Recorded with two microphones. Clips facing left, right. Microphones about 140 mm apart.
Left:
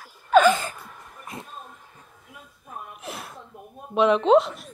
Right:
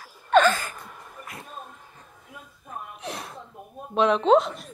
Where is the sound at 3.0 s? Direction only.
5° left (ahead or behind).